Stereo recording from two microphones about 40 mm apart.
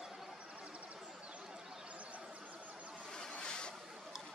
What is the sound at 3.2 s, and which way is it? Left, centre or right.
Waves, left.